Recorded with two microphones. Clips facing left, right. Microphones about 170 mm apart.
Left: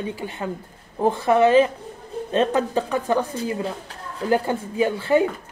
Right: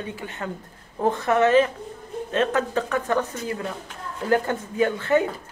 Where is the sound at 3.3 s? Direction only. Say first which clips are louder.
Left 3 dB; 30° left (ahead or behind).